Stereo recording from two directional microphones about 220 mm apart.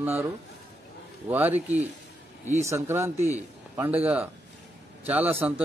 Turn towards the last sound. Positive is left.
turn(degrees=-5)  # may be behind; listen again after turning